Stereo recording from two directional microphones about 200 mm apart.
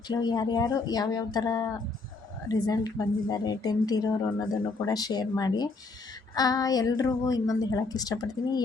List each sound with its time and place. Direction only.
0.1 s a woman's voice: 20° left (ahead or behind)